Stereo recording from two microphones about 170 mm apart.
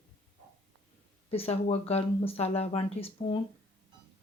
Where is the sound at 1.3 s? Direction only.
35° left (ahead or behind).